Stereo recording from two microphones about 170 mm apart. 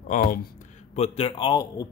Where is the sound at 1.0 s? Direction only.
35° left (ahead or behind).